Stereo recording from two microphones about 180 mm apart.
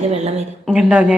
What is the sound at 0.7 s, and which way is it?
Speech, 5° right (ahead or behind).